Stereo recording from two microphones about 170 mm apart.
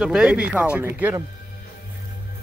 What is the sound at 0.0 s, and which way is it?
Speech, 5° right (ahead or behind).